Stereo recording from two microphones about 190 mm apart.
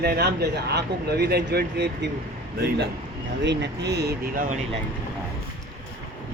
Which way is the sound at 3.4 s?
65° right (ahead or behind).